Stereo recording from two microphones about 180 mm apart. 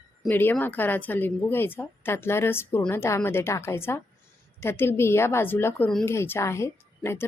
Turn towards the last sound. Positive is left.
turn(degrees=15)  # may be behind; listen again after turning